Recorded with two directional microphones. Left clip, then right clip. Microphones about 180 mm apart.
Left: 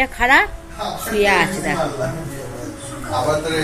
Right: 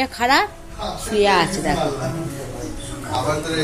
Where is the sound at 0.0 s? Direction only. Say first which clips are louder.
Left 3 dB; 15° right (ahead or behind).